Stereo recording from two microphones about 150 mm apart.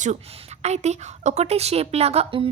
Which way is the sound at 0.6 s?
50° right (ahead or behind).